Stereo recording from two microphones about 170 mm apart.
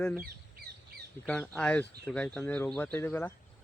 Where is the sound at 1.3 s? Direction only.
5° left (ahead or behind).